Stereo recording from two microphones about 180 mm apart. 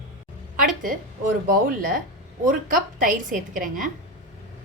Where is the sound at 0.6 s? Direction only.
50° right (ahead or behind).